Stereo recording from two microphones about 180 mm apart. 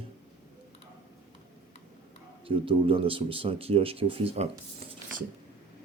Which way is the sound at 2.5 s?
30° right (ahead or behind).